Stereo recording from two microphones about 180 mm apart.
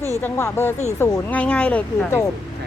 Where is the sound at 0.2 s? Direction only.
10° left (ahead or behind).